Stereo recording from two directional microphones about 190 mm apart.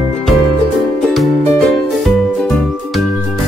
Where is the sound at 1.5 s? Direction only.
Centre (ahead or behind).